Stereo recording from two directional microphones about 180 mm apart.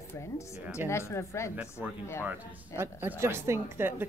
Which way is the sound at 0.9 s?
15° left (ahead or behind).